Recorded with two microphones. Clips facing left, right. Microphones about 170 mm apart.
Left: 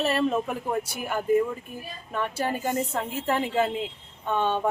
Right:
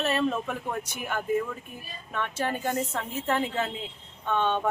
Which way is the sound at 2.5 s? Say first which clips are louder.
Left 2 dB; 10° left (ahead or behind).